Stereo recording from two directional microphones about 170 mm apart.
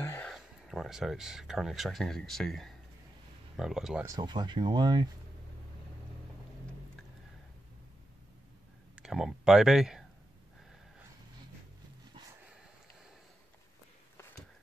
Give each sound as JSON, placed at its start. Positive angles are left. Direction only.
{"t": 0.0, "sound": "a sound", "side_deg": 10}
{"t": 0.3, "sound": "speech", "side_deg": 0}
{"t": 4.0, "sound": "speech", "side_deg": -20}
{"t": 8.9, "sound": "speech", "side_deg": 0}